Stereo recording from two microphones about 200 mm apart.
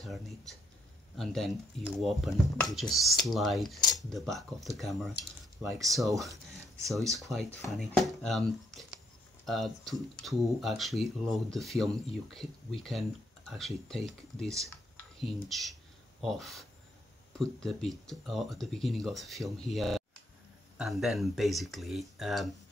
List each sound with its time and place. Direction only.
0.0 s speech: centre (ahead or behind)
5.6 s speech: 15° right (ahead or behind)
6.5 s speech: centre (ahead or behind)